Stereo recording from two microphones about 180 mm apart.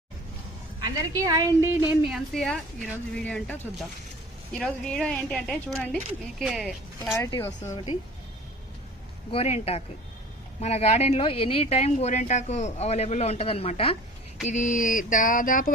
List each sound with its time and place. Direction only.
0.8 s a woman's voice: 20° right (ahead or behind)
2.0 s speech: centre (ahead or behind)
7.2 s speech: 15° left (ahead or behind)
9.3 s speech: 35° left (ahead or behind)
14.4 s a sound: 45° left (ahead or behind)